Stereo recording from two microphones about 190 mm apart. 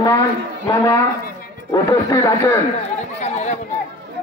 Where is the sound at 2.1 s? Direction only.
15° left (ahead or behind).